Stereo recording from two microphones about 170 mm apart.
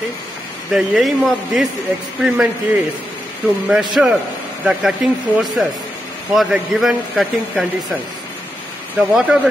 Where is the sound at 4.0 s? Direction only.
5° right (ahead or behind).